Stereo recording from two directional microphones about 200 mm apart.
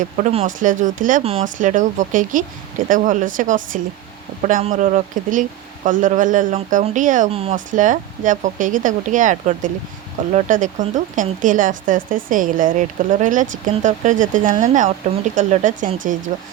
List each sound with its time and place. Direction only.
0.0 s speech: 35° right (ahead or behind)